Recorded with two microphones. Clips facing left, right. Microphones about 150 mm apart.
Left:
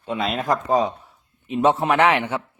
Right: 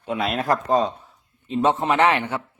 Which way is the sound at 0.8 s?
10° left (ahead or behind).